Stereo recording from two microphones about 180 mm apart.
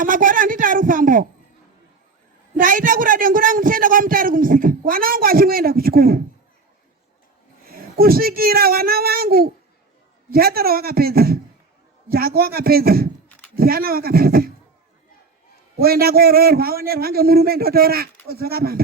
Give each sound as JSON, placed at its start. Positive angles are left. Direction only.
{"t": 0.0, "sound": "a sound", "side_deg": -50}
{"t": 2.6, "sound": "speech", "side_deg": -50}
{"t": 7.7, "sound": "a man's voice", "side_deg": -55}
{"t": 15.8, "sound": "a man's voice", "side_deg": -55}